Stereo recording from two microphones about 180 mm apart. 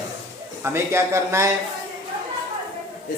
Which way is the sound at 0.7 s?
15° right (ahead or behind).